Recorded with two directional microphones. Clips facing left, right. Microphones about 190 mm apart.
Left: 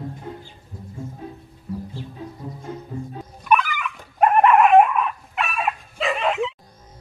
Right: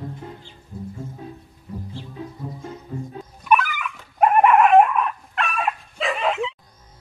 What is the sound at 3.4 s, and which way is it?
Dog, centre (ahead or behind).